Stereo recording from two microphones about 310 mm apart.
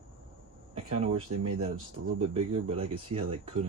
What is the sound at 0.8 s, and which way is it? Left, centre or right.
Speech, right.